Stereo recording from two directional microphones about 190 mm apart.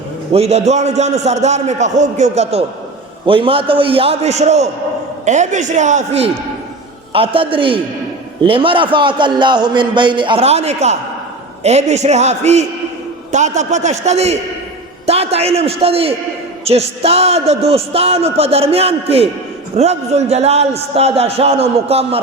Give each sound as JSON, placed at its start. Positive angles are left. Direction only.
{"t": 0.3, "sound": "a man's voice", "side_deg": -35}